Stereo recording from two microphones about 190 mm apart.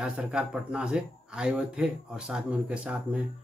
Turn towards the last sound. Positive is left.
turn(degrees=-5)  # may be behind; listen again after turning